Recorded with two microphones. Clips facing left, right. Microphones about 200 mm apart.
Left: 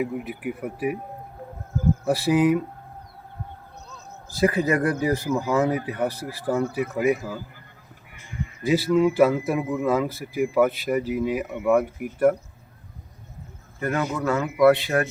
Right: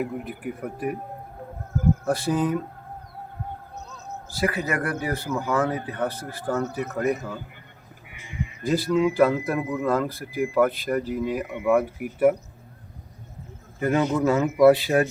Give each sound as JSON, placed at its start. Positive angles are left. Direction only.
{"t": 0.0, "sound": "speech", "side_deg": 5}
{"t": 2.0, "sound": "speech", "side_deg": 5}
{"t": 4.7, "sound": "speech", "side_deg": 20}
{"t": 8.6, "sound": "speech", "side_deg": 5}
{"t": 13.7, "sound": "a man's voice", "side_deg": -20}